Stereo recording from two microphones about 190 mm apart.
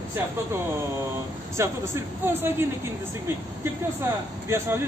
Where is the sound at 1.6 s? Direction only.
10° right (ahead or behind).